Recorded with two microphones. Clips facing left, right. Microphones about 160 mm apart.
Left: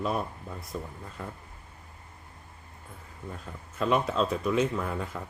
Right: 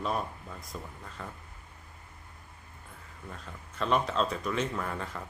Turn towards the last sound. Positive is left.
turn(degrees=5)  # may be behind; listen again after turning